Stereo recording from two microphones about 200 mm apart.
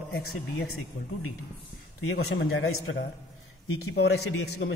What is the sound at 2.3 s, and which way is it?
Speech, 85° left.